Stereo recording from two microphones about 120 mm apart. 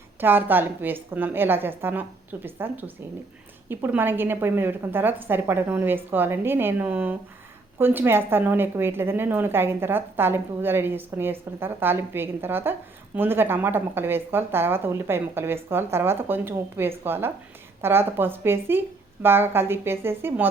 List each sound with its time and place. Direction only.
0.2 s a woman's voice: 15° right (ahead or behind)